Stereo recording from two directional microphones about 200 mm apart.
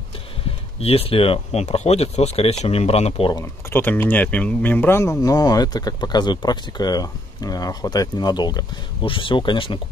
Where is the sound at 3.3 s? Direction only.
10° left (ahead or behind).